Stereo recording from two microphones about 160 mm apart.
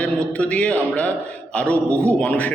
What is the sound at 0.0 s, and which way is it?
A man's voice, 5° left (ahead or behind).